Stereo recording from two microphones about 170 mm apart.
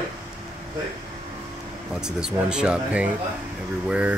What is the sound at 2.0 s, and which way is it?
Speech, 5° right (ahead or behind).